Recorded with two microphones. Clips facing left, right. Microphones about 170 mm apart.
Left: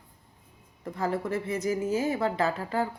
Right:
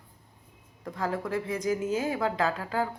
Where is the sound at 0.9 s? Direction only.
5° left (ahead or behind).